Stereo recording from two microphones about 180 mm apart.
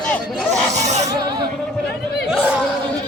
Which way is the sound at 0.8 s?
40° right (ahead or behind).